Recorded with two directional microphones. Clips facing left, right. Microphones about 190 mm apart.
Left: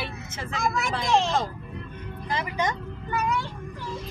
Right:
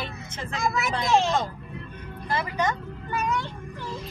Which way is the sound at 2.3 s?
15° left (ahead or behind).